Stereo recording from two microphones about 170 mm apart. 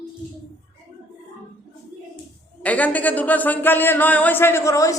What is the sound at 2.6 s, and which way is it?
A man's voice, 10° left (ahead or behind).